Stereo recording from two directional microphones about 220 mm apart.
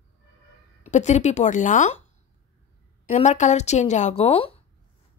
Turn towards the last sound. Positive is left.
turn(degrees=25)  # may be behind; listen again after turning